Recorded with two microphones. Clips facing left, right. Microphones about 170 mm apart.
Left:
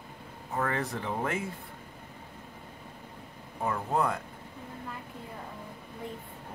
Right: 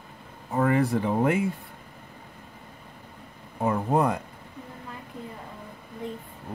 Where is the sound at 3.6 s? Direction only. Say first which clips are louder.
Right 6 dB; 20° right (ahead or behind).